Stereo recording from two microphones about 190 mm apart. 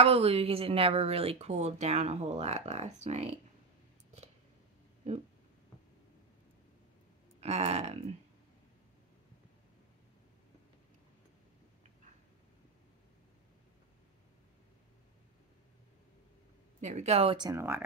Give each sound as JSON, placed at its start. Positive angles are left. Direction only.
{"t": 0.0, "sound": "speech", "side_deg": -30}
{"t": 7.3, "sound": "speech", "side_deg": -35}
{"t": 16.8, "sound": "speech", "side_deg": -35}